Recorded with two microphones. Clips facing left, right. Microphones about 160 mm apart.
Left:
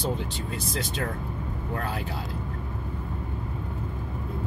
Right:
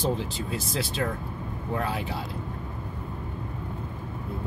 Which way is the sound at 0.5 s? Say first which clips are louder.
Right 1 dB; centre (ahead or behind).